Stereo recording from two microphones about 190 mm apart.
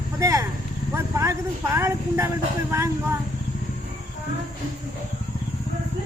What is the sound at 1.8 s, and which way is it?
Speech, 15° right (ahead or behind).